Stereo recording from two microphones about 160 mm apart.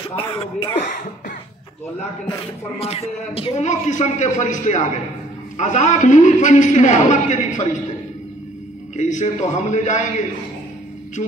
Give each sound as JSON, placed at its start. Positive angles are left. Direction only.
{"t": 0.4, "sound": "speech", "side_deg": 35}
{"t": 2.8, "sound": "a man's voice", "side_deg": 40}
{"t": 8.9, "sound": "a man's voice", "side_deg": 50}